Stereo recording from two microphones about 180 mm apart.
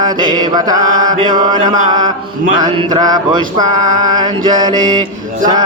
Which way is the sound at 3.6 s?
45° right (ahead or behind).